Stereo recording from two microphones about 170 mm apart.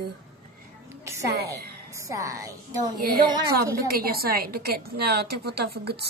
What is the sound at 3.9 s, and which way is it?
A woman's voice, 65° right (ahead or behind).